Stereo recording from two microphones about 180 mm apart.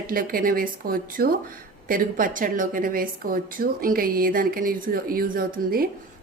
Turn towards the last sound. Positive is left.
turn(degrees=-55)  # may be behind; listen again after turning